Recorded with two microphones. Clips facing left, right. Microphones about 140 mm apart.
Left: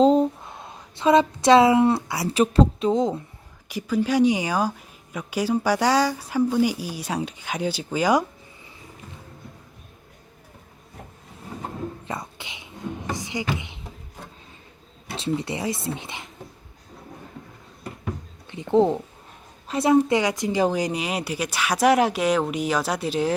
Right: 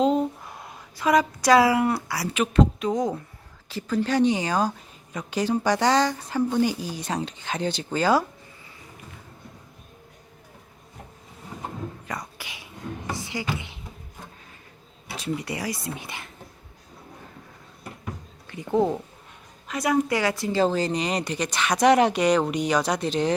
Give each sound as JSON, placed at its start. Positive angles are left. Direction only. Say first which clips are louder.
{"t": 0.0, "sound": "speech", "louder": "left 5 dB", "side_deg": 35}
{"t": 2.3, "sound": "speech", "louder": "left 3 dB", "side_deg": 35}
{"t": 3.7, "sound": "speech", "louder": "left 2 dB", "side_deg": 10}
{"t": 12.0, "sound": "a sound", "louder": "left 2 dB", "side_deg": 25}
{"t": 15.1, "sound": "speech", "louder": "left 3 dB", "side_deg": 25}
{"t": 18.4, "sound": "speech", "louder": "left 4 dB", "side_deg": 20}